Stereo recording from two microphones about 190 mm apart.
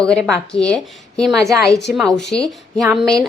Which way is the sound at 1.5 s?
15° right (ahead or behind).